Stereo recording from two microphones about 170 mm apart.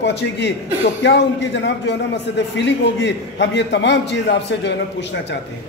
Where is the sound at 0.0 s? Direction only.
90° left.